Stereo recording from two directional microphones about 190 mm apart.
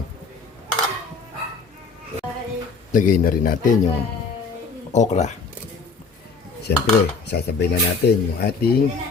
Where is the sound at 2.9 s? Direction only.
45° left (ahead or behind).